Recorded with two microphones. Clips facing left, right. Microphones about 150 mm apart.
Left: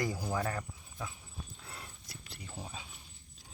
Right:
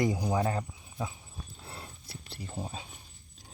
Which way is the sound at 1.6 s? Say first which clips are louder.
Right 4 dB; 30° right (ahead or behind).